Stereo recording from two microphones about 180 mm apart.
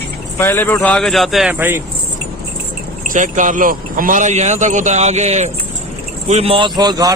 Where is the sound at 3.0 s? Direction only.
45° right (ahead or behind).